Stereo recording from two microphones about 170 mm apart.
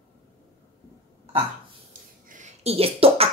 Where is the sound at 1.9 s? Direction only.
45° right (ahead or behind).